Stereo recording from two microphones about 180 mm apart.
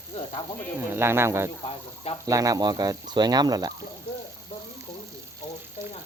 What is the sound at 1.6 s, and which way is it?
Speech, 35° left (ahead or behind).